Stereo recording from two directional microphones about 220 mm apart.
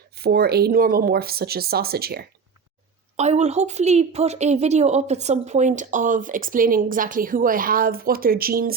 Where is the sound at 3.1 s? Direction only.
30° right (ahead or behind).